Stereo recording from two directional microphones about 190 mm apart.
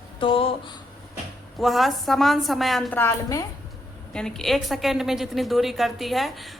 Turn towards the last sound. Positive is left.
turn(degrees=0)  # may be behind; listen again after turning